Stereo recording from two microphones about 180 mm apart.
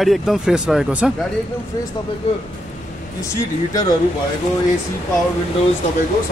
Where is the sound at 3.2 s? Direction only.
15° left (ahead or behind).